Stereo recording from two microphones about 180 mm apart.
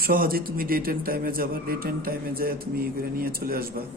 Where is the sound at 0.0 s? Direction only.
55° right (ahead or behind).